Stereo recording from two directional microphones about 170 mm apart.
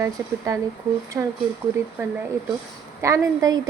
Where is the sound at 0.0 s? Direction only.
20° right (ahead or behind).